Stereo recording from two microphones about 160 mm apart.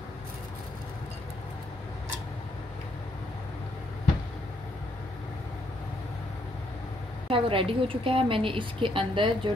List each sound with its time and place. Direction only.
7.2 s a woman's voice: 35° right (ahead or behind)